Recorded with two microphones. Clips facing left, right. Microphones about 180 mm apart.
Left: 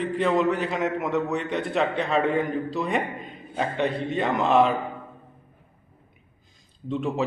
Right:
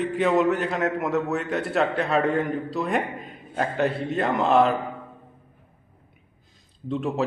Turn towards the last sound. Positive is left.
turn(degrees=0)  # may be behind; listen again after turning